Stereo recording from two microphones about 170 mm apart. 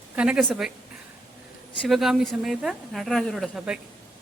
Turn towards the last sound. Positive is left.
turn(degrees=-5)  # may be behind; listen again after turning